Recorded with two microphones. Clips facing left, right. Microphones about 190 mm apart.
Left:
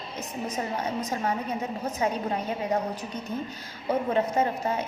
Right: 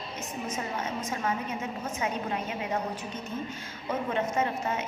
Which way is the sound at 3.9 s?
35° left (ahead or behind).